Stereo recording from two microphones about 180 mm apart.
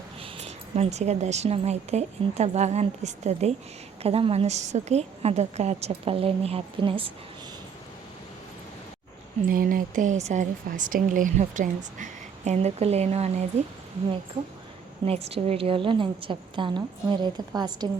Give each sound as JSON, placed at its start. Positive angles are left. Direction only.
{"t": 0.2, "sound": "a woman's voice", "side_deg": -35}
{"t": 9.5, "sound": "a woman's voice", "side_deg": -50}